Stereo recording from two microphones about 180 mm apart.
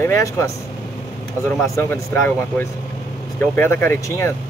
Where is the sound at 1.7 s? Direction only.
10° left (ahead or behind).